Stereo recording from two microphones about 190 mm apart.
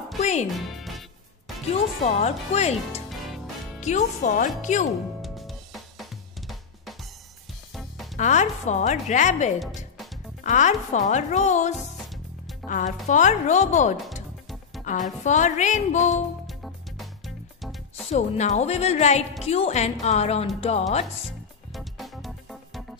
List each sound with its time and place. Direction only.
0.2 s music: 35° left (ahead or behind)
0.5 s music: centre (ahead or behind)
1.7 s a woman's voice: 35° left (ahead or behind)
3.1 s music: centre (ahead or behind)
3.8 s a woman's voice: 40° left (ahead or behind)
5.2 s drum: centre (ahead or behind)
7.7 s music: centre (ahead or behind)
8.2 s a woman's voice: 40° left (ahead or behind)
16.4 s music: centre (ahead or behind)
18.1 s a woman's voice: 40° left (ahead or behind)
21.7 s music: centre (ahead or behind)